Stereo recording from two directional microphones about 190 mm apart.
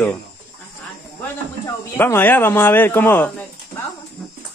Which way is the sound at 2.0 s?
10° left (ahead or behind).